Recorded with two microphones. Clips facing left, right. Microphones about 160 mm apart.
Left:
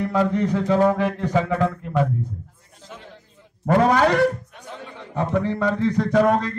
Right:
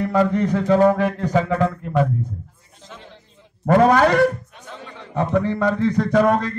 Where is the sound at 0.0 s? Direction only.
50° right (ahead or behind).